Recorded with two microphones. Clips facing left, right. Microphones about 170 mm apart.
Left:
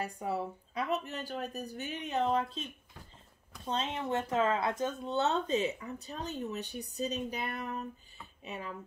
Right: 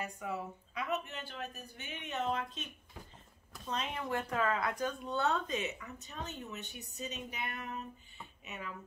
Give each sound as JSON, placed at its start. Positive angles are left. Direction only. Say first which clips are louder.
{"t": 0.0, "sound": "speech", "louder": "left 5 dB", "side_deg": 35}